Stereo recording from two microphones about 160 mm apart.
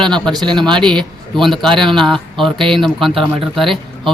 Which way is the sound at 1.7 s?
30° right (ahead or behind).